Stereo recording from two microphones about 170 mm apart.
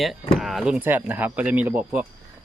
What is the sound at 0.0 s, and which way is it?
Speech, centre (ahead or behind).